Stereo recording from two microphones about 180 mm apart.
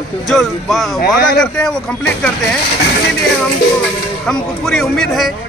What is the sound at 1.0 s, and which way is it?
Speech, 60° left (ahead or behind).